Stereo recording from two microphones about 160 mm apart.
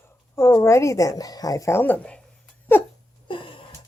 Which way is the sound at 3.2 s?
30° left (ahead or behind).